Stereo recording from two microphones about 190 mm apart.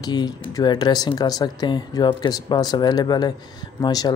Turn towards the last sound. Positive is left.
turn(degrees=20)  # may be behind; listen again after turning